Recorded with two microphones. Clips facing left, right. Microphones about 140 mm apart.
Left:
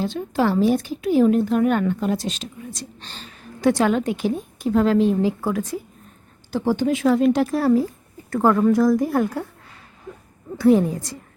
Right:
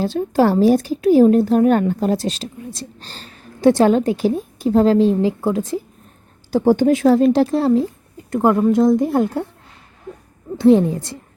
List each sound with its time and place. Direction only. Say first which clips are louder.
0.0 s a woman's voice: right 5 dB; 40° right (ahead or behind)
6.5 s a woman's voice: right 7 dB; 45° right (ahead or behind); by 9.5 s 25° right (ahead or behind)
10.6 s speech: right 4 dB; 25° right (ahead or behind)